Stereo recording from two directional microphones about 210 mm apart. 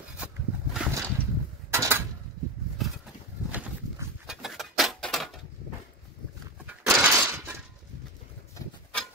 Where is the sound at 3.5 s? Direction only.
5° right (ahead or behind).